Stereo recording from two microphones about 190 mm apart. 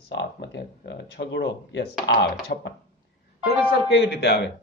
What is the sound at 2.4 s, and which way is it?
Speech, 55° left (ahead or behind).